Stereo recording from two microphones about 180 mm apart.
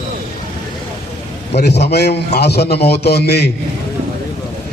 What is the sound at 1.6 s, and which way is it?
A man's voice, 65° left (ahead or behind).